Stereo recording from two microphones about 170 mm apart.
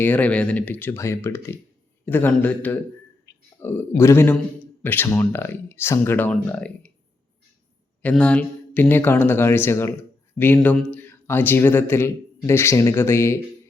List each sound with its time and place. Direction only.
0.0 s a man's voice: 10° left (ahead or behind)
3.3 s a sound: 90° left
3.6 s a man's voice: 15° left (ahead or behind)
8.0 s a man's voice: 5° left (ahead or behind)